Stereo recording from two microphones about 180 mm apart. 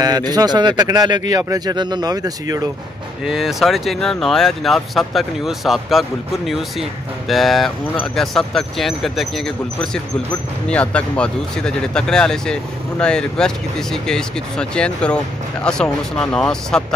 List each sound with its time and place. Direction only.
0.0 s a man's voice: 20° right (ahead or behind)
3.3 s speech: centre (ahead or behind)